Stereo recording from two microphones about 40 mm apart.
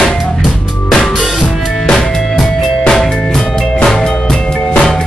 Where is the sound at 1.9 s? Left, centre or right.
Centre.